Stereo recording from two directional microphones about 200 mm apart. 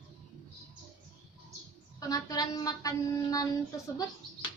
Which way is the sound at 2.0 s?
20° left (ahead or behind).